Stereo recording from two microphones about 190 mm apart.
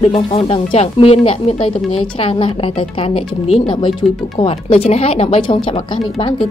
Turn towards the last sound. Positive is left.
turn(degrees=25)  # may be behind; listen again after turning